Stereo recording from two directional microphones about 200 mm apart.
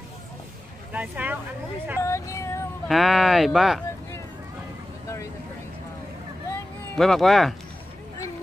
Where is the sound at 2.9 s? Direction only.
Centre (ahead or behind).